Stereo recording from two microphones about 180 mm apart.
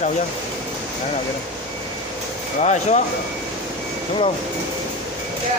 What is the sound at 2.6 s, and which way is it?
Speech, 40° left (ahead or behind).